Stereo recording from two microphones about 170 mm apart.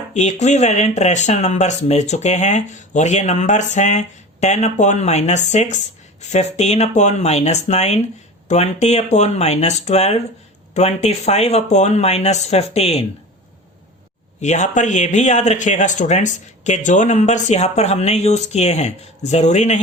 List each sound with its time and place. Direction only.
0.1 s speech: 45° left (ahead or behind)
14.4 s speech: 45° left (ahead or behind)